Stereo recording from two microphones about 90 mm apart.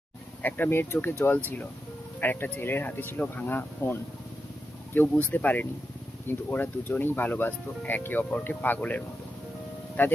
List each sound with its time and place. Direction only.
0.4 s speech: 20° left (ahead or behind)
4.9 s speech: 20° left (ahead or behind)
10.0 s speech: 20° left (ahead or behind)